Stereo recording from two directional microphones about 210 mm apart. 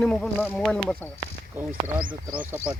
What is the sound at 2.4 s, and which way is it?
Speech, 10° right (ahead or behind).